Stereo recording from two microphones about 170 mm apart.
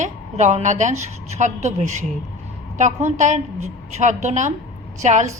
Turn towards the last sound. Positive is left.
turn(degrees=-45)  # may be behind; listen again after turning